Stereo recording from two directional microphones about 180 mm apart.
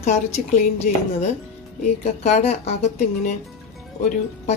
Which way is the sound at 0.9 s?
50° left (ahead or behind).